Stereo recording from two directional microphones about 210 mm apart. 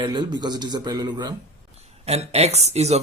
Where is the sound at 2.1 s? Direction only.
30° right (ahead or behind).